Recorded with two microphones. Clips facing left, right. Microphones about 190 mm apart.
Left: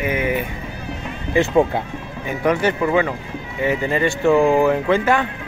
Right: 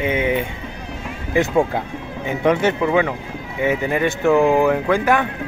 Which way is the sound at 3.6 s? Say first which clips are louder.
Even; 15° right (ahead or behind).